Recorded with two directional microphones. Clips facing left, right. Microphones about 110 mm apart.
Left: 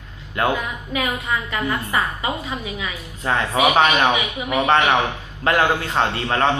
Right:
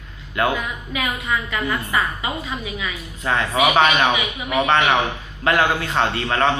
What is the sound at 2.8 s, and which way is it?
A man's voice, 30° left (ahead or behind).